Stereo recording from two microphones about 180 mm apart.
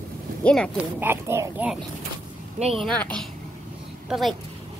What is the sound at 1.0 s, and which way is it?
Speech, 15° right (ahead or behind).